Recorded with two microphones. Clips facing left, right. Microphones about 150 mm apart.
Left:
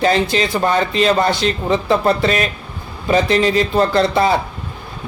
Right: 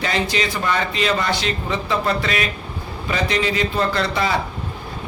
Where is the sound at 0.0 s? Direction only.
35° left (ahead or behind).